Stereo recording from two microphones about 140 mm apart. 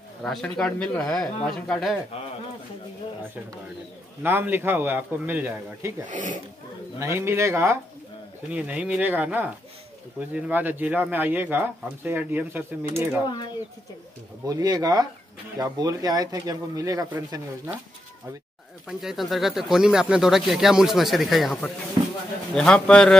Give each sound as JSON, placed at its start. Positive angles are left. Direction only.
{"t": 0.2, "sound": "speech", "side_deg": 5}
{"t": 4.2, "sound": "speech", "side_deg": -15}
{"t": 6.0, "sound": "speech", "side_deg": -65}
{"t": 7.0, "sound": "speech", "side_deg": -20}
{"t": 8.5, "sound": "speech", "side_deg": -10}
{"t": 14.4, "sound": "speech", "side_deg": -25}
{"t": 18.9, "sound": "speech", "side_deg": -5}
{"t": 22.0, "sound": "a sound", "side_deg": -30}
{"t": 22.5, "sound": "speech", "side_deg": 5}